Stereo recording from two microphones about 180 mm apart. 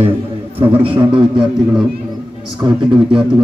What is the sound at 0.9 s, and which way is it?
Speech, 30° right (ahead or behind).